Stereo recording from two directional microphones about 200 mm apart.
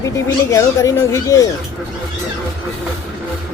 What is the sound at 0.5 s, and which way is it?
Speech, 15° left (ahead or behind).